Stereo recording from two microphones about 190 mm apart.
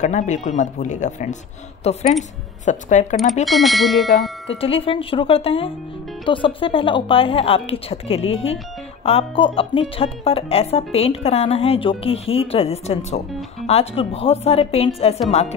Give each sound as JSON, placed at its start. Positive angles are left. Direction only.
{"t": 0.0, "sound": "speech", "side_deg": 40}
{"t": 3.4, "sound": "speech", "side_deg": 0}
{"t": 4.5, "sound": "speech", "side_deg": 30}